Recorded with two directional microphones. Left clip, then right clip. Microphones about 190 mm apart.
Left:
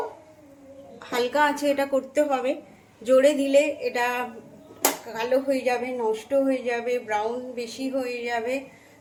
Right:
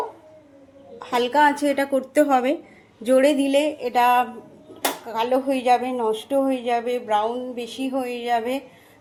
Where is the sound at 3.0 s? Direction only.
30° right (ahead or behind).